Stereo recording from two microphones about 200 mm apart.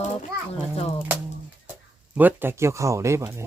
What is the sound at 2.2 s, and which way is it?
Speech, 10° right (ahead or behind).